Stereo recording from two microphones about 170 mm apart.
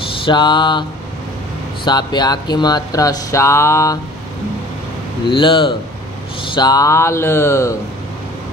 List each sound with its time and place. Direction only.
0.2 s speech: 25° left (ahead or behind)
1.9 s speech: 25° left (ahead or behind)
5.3 s speech: 30° left (ahead or behind)